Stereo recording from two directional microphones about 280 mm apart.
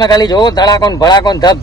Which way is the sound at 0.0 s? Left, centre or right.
Centre.